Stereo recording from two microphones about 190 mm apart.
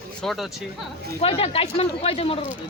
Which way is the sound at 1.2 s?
30° left (ahead or behind).